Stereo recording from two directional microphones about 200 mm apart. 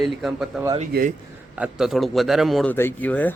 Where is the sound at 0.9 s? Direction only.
45° right (ahead or behind).